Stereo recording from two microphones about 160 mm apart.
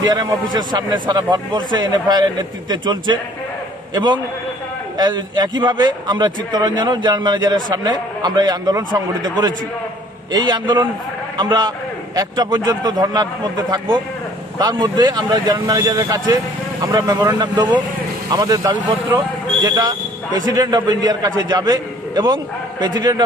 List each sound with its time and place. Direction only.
0.0 s a man's voice: 25° right (ahead or behind)